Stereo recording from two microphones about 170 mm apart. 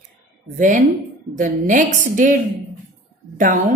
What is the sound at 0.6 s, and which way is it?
A woman's voice, 50° right (ahead or behind).